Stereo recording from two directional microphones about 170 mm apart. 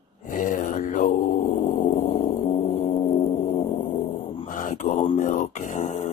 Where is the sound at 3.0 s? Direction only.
25° left (ahead or behind).